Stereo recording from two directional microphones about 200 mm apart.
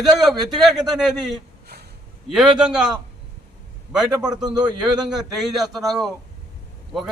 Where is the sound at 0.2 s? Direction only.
Centre (ahead or behind).